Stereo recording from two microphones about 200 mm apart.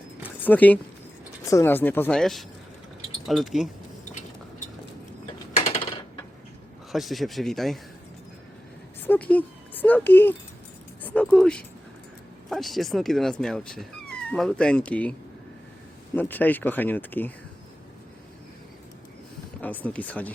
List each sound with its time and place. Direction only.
0.2 s a sound: 10° left (ahead or behind)
1.5 s speech: 15° left (ahead or behind)
5.6 s a sound: 25° left (ahead or behind)
6.9 s speech: centre (ahead or behind)
9.0 s speech: 5° left (ahead or behind)
16.1 s speech: 10° left (ahead or behind)
19.6 s speech: 10° left (ahead or behind)